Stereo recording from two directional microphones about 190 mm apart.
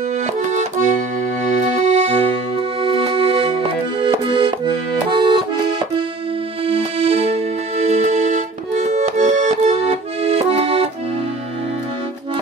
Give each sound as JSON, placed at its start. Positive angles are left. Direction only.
{"t": 1.9, "sound": "accordion", "side_deg": -35}
{"t": 2.8, "sound": "accordion", "side_deg": -25}
{"t": 6.6, "sound": "music", "side_deg": -30}